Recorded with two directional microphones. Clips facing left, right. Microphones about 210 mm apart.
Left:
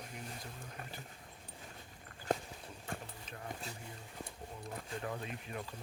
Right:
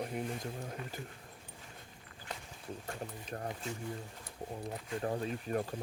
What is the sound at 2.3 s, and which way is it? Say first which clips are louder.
Walk: left 11 dB; 50° left (ahead or behind).